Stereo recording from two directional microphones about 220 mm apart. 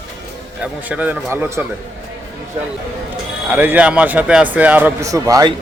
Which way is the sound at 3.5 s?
10° right (ahead or behind).